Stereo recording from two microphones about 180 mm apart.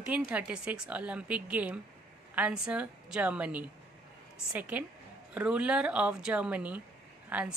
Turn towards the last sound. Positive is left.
turn(degrees=-5)  # may be behind; listen again after turning